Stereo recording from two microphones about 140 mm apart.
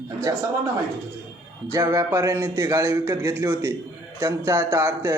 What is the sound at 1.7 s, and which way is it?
A man's voice, 20° right (ahead or behind).